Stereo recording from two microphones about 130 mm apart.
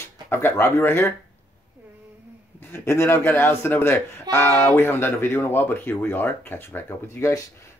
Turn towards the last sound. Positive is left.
turn(degrees=20)  # may be behind; listen again after turning